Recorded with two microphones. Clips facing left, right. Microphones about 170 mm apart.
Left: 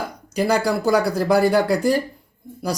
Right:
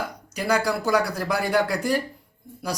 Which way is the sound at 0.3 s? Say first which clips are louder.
Left 4 dB; 30° left (ahead or behind).